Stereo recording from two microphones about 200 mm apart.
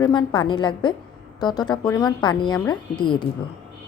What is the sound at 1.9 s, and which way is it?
A woman's voice, 20° left (ahead or behind).